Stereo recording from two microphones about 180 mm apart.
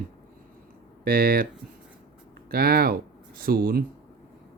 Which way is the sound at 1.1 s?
55° right (ahead or behind).